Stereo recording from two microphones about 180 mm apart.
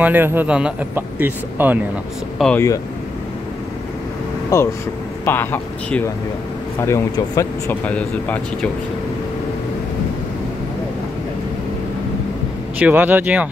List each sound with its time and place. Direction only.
0.0 s speech: 10° right (ahead or behind)
2.3 s speech: 5° left (ahead or behind)
4.5 s speech: 15° left (ahead or behind)
12.7 s speech: 10° right (ahead or behind)